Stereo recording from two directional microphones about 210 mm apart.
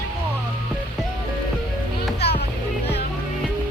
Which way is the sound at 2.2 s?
50° left (ahead or behind).